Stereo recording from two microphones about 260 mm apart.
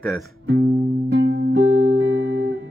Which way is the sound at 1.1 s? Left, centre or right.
Right.